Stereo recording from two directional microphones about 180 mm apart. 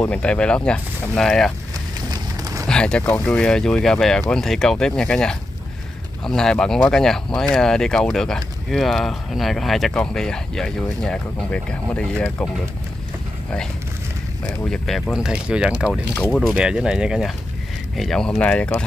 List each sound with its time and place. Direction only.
0.0 s speech: 5° left (ahead or behind)
2.0 s a sound: 20° right (ahead or behind)
2.6 s speech: 5° left (ahead or behind)
14.6 s speech: 5° left (ahead or behind)
15.9 s speech: 5° left (ahead or behind)